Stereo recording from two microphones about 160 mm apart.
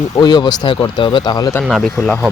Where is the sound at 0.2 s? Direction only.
30° left (ahead or behind).